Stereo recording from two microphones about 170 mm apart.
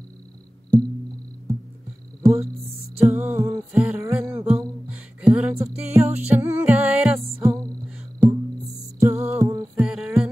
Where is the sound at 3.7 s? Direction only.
5° right (ahead or behind).